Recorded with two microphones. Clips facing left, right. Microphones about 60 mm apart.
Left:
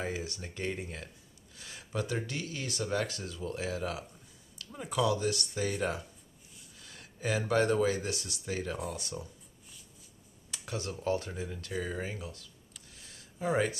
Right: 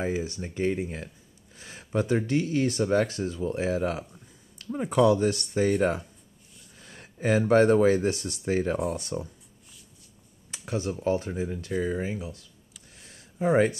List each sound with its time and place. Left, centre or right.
0.0 s speech: right
6.8 s speech: right
10.5 s speech: right
12.9 s a sound: right